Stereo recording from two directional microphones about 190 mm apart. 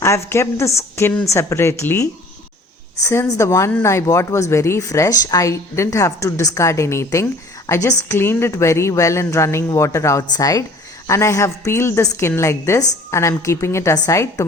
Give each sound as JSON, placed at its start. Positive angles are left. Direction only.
{"t": 0.0, "sound": "speech", "side_deg": 15}